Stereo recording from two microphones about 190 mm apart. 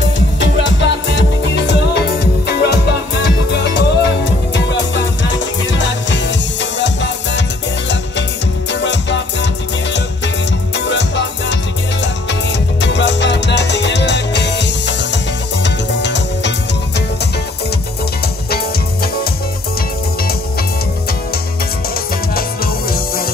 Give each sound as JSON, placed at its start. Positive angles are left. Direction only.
{"t": 0.4, "sound": "music", "side_deg": 70}
{"t": 8.7, "sound": "music", "side_deg": 70}
{"t": 10.8, "sound": "music", "side_deg": 70}
{"t": 12.8, "sound": "music", "side_deg": 65}